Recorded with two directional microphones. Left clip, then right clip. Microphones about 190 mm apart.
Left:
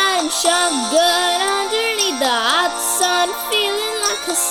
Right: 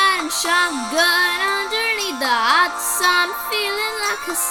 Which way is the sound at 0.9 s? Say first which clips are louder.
Left 1 dB; 15° left (ahead or behind).